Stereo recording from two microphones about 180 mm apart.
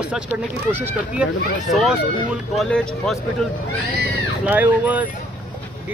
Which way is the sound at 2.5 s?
Centre (ahead or behind).